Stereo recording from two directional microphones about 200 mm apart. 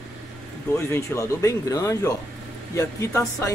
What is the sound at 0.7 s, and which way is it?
Speech, 15° left (ahead or behind).